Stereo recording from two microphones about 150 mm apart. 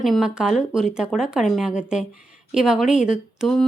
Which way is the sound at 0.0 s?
Centre (ahead or behind).